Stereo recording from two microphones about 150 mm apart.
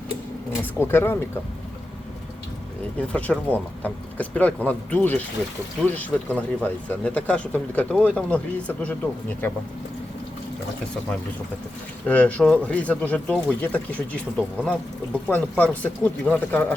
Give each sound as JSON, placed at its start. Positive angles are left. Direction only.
{"t": 0.6, "sound": "speech", "side_deg": 15}
{"t": 3.1, "sound": "speech", "side_deg": 10}
{"t": 12.0, "sound": "speech", "side_deg": 10}